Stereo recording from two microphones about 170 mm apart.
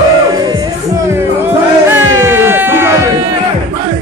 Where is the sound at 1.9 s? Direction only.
15° right (ahead or behind).